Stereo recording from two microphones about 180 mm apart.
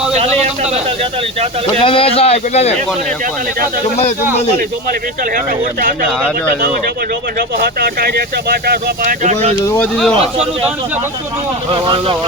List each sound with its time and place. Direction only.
0.1 s a sound: 35° right (ahead or behind)
1.8 s speech: 30° left (ahead or behind)
7.3 s speech: 60° right (ahead or behind)
9.2 s speech: 35° right (ahead or behind)
9.6 s speech: 15° left (ahead or behind)
11.7 s speech: 30° right (ahead or behind)